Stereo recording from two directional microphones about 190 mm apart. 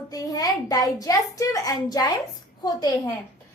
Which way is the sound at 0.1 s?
20° left (ahead or behind).